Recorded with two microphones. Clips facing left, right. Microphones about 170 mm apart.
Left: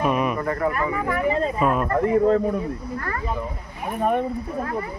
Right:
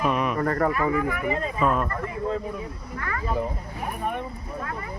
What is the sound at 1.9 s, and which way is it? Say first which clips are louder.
Speech: left 10 dB; 65° left (ahead or behind).